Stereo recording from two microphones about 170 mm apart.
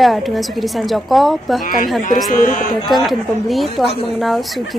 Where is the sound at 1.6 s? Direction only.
55° left (ahead or behind).